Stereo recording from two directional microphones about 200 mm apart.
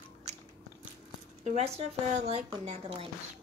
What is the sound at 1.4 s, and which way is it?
Speech, 30° right (ahead or behind).